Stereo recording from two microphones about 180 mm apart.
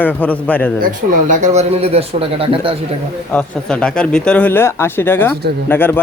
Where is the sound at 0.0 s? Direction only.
10° left (ahead or behind).